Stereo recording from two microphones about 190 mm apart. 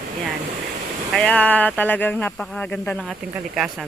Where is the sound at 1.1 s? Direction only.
5° left (ahead or behind).